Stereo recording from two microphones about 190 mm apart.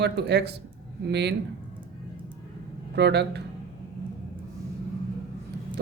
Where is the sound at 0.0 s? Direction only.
60° right (ahead or behind).